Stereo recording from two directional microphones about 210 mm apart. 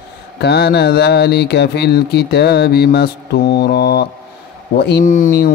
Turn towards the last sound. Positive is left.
turn(degrees=40)  # may be behind; listen again after turning